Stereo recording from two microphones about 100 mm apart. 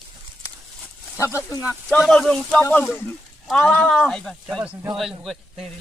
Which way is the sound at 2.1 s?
5° left (ahead or behind).